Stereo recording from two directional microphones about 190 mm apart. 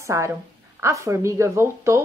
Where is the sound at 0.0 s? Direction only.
15° right (ahead or behind).